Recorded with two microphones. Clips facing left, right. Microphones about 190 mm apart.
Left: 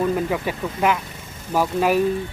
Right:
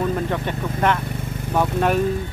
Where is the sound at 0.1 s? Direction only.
5° left (ahead or behind).